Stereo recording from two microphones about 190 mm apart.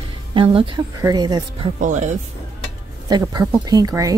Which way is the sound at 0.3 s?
30° right (ahead or behind).